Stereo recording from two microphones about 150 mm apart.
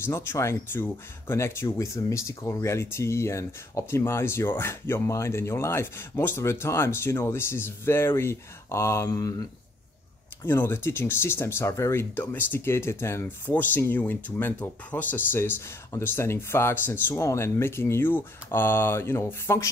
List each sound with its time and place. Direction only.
0.0 s speech: 15° left (ahead or behind)